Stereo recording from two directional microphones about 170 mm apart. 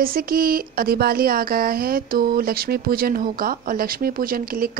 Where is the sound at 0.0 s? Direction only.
60° right (ahead or behind).